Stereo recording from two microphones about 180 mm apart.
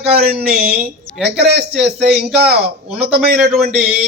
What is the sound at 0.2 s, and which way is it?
Speech, 60° right (ahead or behind).